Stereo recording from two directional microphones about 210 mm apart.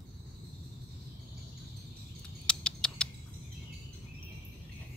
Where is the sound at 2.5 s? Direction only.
5° left (ahead or behind).